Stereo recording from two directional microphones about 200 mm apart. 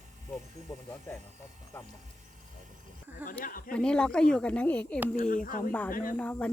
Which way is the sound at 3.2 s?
10° right (ahead or behind).